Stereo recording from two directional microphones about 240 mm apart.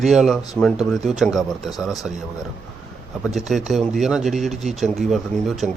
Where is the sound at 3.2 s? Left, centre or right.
Centre.